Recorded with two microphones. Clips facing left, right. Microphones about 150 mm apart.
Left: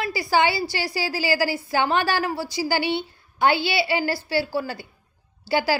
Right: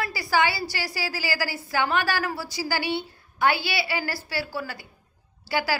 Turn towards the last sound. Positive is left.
turn(degrees=25)  # may be behind; listen again after turning